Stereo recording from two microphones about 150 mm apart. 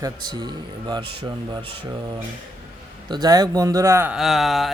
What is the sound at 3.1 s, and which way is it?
Speech, 25° right (ahead or behind).